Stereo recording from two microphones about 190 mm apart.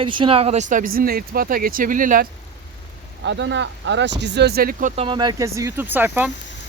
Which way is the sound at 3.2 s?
65° right (ahead or behind).